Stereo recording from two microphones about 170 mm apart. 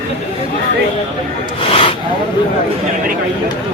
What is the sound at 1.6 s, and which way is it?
Snake, 35° left (ahead or behind).